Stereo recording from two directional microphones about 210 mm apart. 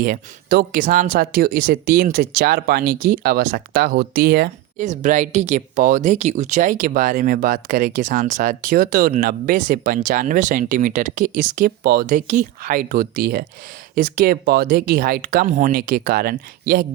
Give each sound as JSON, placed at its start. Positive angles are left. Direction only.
{"t": 0.0, "sound": "speech", "side_deg": -45}
{"t": 4.9, "sound": "speech", "side_deg": -35}